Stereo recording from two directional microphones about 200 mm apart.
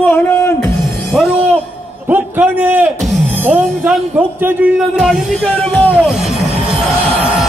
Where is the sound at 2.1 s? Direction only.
10° right (ahead or behind); by 5.9 s 5° left (ahead or behind).